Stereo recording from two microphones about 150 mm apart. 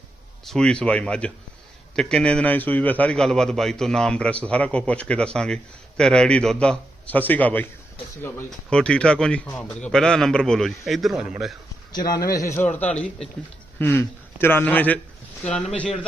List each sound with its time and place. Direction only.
0.4 s a man's voice: 5° left (ahead or behind)
11.9 s a man's voice: 25° left (ahead or behind)
12.7 s a man's voice: 10° left (ahead or behind)